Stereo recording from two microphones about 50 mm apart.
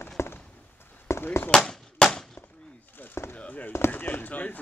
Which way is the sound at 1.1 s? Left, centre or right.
Left.